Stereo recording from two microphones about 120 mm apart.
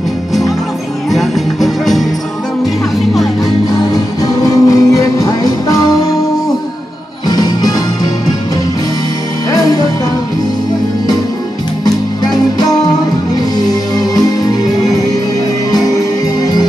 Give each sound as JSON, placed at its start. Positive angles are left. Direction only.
{"t": 1.1, "sound": "music", "side_deg": 0}
{"t": 3.9, "sound": "music", "side_deg": 30}
{"t": 7.2, "sound": "music", "side_deg": 35}
{"t": 9.5, "sound": "music", "side_deg": 30}
{"t": 13.6, "sound": "music", "side_deg": 35}